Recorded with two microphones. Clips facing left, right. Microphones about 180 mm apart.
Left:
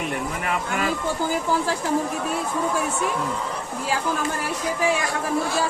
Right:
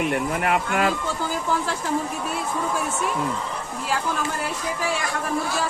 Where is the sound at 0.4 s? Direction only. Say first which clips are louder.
Right 3 dB; 55° right (ahead or behind).